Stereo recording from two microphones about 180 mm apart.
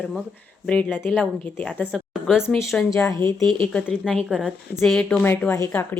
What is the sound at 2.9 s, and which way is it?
Speech, 15° left (ahead or behind).